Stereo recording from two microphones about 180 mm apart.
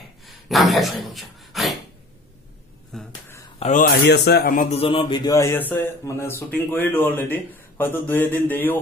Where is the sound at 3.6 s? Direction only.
40° left (ahead or behind).